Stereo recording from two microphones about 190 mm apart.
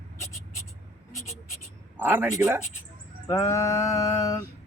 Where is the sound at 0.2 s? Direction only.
15° left (ahead or behind).